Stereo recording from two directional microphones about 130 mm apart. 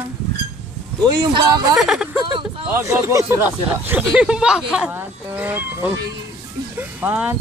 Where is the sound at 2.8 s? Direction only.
20° right (ahead or behind).